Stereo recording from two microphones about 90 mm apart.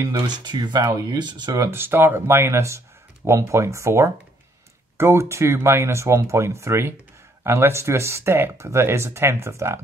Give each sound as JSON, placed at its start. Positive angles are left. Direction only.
{"t": 0.5, "sound": "speech", "side_deg": -50}
{"t": 1.7, "sound": "speech", "side_deg": -25}